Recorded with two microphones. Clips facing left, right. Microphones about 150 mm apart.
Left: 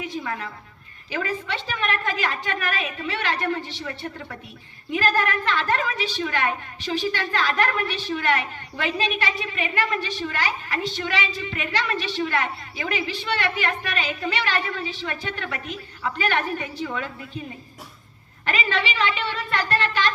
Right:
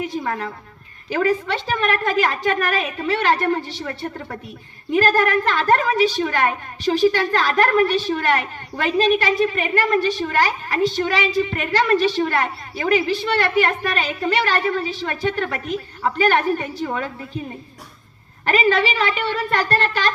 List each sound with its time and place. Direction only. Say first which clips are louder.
0.0 s a woman's voice: right 5 dB; 45° right (ahead or behind)
18.4 s a woman's voice: right 8 dB; 40° right (ahead or behind)